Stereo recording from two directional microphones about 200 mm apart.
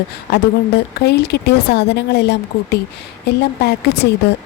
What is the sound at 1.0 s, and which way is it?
Speech, 55° left (ahead or behind).